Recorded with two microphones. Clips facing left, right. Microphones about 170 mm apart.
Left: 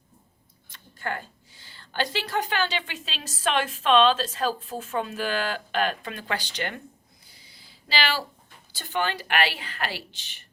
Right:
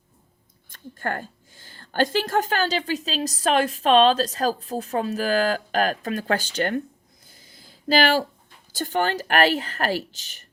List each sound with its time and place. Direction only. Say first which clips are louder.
0.7 s a woman's voice: right 4 dB; 50° right (ahead or behind)
7.3 s a sound: right 6 dB; 50° right (ahead or behind)
8.7 s a woman's voice: right 5 dB; 45° right (ahead or behind)